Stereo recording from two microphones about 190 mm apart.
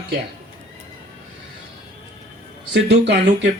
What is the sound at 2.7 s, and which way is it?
Speech, 65° right (ahead or behind).